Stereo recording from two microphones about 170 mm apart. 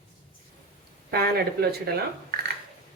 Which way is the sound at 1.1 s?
65° right (ahead or behind).